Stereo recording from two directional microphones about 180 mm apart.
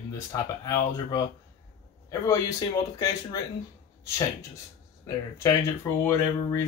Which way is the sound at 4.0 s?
15° left (ahead or behind).